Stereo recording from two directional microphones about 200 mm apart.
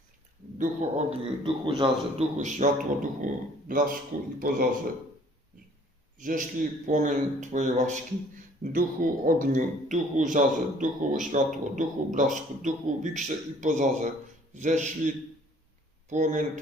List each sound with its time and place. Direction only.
0.6 s speech: 35° right (ahead or behind)
1.5 s a man's voice: 25° right (ahead or behind)
2.4 s speech: 40° right (ahead or behind)
6.1 s a man's voice: 40° right (ahead or behind)